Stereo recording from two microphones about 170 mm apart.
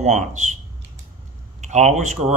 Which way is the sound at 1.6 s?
45° right (ahead or behind).